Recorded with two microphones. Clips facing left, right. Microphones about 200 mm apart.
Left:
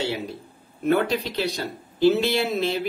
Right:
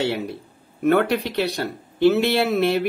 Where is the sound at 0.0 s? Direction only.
60° right (ahead or behind).